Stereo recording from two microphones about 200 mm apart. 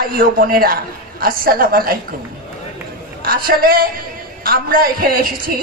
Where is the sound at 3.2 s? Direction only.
50° right (ahead or behind).